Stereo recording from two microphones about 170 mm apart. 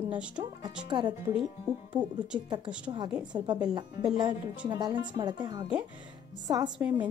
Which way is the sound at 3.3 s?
25° right (ahead or behind).